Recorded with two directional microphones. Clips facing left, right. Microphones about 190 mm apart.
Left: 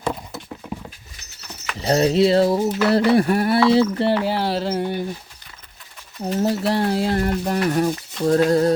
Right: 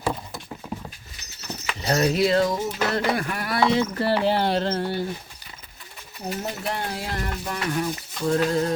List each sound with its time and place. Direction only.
1.8 s a sound: 30° left (ahead or behind)
2.9 s speech: 30° left (ahead or behind)
4.2 s speech: 5° left (ahead or behind)
6.4 s speech: 35° left (ahead or behind)